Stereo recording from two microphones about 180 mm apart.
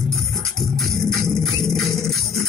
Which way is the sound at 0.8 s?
Centre (ahead or behind).